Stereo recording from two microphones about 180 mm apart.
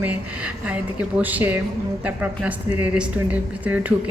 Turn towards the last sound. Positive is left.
turn(degrees=-10)  # may be behind; listen again after turning